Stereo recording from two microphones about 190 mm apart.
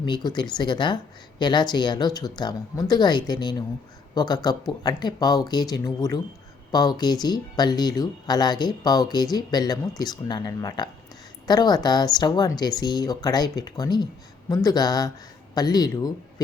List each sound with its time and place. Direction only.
0.0 s speech: 25° left (ahead or behind)